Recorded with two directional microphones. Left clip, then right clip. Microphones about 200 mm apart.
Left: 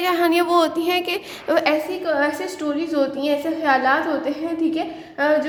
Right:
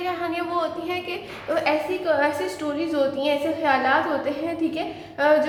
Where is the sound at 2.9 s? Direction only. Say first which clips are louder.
Left 1 dB; 35° left (ahead or behind).